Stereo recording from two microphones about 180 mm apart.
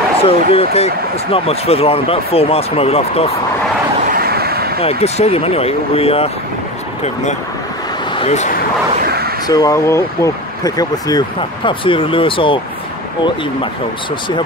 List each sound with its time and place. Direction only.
0.2 s speech: 35° left (ahead or behind)
4.1 s vehicle: 60° right (ahead or behind)
4.8 s speech: 35° left (ahead or behind)
8.2 s speech: 40° left (ahead or behind)
9.0 s a sound: 60° right (ahead or behind)
9.5 s speech: 20° left (ahead or behind)